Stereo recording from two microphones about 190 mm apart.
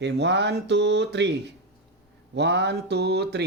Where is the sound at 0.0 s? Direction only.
65° right (ahead or behind).